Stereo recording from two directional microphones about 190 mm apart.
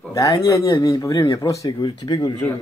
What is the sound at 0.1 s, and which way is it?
Speech, 20° left (ahead or behind).